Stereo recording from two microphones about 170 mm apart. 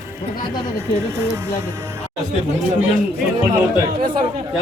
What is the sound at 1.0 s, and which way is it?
Speech, 15° right (ahead or behind).